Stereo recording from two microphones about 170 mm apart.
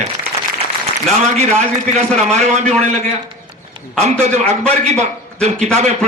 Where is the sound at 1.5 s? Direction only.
5° left (ahead or behind).